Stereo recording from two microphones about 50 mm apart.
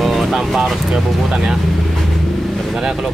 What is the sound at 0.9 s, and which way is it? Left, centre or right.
Speech, centre.